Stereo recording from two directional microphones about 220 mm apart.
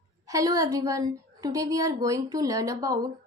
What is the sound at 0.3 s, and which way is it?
A woman's voice, 15° right (ahead or behind).